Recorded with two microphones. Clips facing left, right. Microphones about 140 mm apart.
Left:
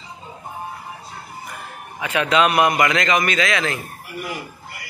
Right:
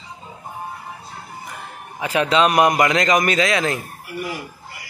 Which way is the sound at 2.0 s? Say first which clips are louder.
Right 1 dB; 35° right (ahead or behind).